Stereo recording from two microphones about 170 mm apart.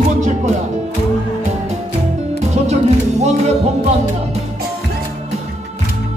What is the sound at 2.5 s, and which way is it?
Music, 40° right (ahead or behind).